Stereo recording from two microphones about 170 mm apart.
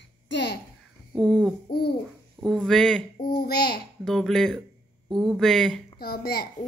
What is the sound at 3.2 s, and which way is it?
Speech, 65° left (ahead or behind).